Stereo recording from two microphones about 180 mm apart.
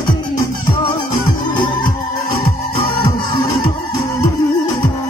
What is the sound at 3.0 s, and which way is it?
Music, 20° left (ahead or behind).